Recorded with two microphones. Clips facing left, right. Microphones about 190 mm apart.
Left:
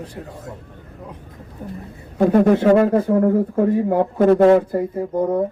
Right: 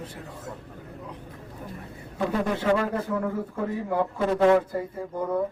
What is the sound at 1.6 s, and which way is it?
Speech, 30° left (ahead or behind).